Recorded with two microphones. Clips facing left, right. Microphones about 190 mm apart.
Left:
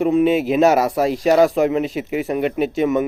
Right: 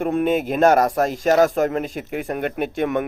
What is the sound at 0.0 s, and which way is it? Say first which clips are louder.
Speech: left 4 dB; centre (ahead or behind).